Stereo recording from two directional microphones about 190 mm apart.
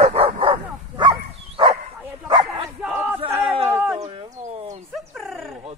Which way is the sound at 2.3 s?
25° right (ahead or behind).